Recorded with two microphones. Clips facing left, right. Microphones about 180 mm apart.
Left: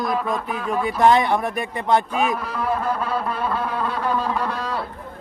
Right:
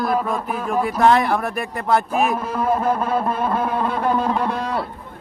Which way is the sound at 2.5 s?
45° right (ahead or behind).